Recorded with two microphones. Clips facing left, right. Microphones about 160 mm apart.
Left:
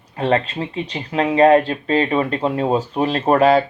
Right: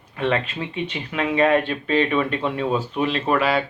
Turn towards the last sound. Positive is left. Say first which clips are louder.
# left 6 dB
turn(degrees=40)  # may be behind; listen again after turning